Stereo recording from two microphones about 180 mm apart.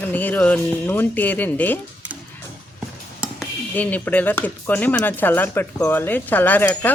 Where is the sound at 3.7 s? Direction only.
10° left (ahead or behind).